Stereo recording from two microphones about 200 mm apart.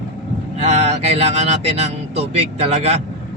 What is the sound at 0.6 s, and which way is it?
Mantra, 35° right (ahead or behind).